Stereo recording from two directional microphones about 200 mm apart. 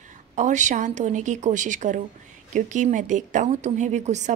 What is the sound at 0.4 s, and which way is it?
A woman's voice, 35° right (ahead or behind).